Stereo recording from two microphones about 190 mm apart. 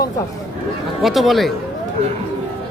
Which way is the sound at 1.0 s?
Centre (ahead or behind).